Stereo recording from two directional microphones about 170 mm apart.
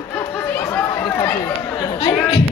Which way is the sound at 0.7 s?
15° left (ahead or behind).